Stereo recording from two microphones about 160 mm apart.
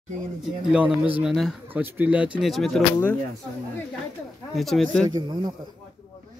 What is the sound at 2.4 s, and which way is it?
Speech, centre (ahead or behind).